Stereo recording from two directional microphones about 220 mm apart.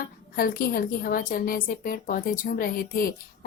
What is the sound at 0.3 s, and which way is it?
A woman's voice, 40° left (ahead or behind).